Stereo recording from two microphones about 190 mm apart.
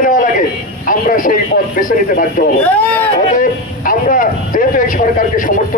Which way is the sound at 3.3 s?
45° left (ahead or behind).